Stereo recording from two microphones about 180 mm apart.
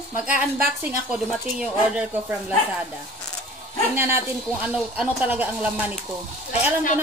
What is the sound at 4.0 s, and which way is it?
Speech, 10° right (ahead or behind).